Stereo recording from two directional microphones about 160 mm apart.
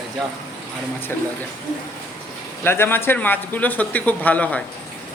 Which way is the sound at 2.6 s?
15° left (ahead or behind).